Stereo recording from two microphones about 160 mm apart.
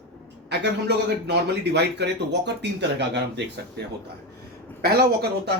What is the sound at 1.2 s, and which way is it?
Speech, 90° right.